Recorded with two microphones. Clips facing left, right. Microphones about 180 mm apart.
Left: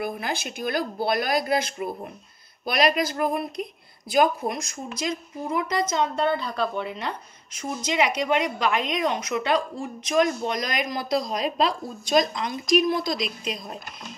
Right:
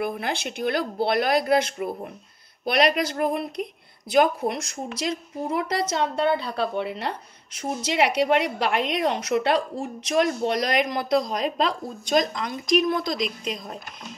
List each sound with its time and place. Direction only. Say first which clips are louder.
0.0 s a woman's voice: right 2 dB; 65° right (ahead or behind)